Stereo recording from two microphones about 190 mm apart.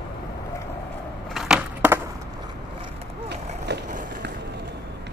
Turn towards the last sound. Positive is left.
turn(degrees=-65)  # may be behind; listen again after turning